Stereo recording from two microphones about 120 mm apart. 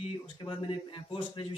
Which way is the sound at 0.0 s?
45° left (ahead or behind).